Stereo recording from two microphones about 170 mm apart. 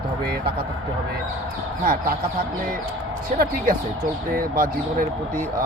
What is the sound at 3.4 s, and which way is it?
Speech, 60° right (ahead or behind).